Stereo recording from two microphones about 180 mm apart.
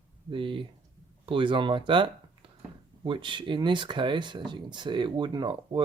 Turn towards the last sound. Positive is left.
turn(degrees=-25)  # may be behind; listen again after turning